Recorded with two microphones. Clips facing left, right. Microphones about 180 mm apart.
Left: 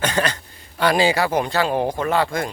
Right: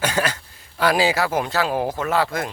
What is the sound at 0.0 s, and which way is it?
Speech, 5° right (ahead or behind).